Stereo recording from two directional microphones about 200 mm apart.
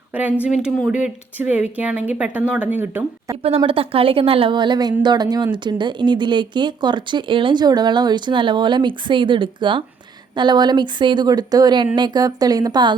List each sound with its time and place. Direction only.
0.1 s speech: 10° right (ahead or behind)
3.4 s speech: 30° right (ahead or behind)